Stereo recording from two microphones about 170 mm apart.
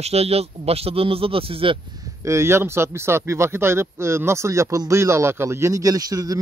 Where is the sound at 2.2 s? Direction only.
15° right (ahead or behind).